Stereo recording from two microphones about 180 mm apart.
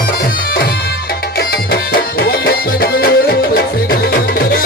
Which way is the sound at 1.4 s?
60° left (ahead or behind).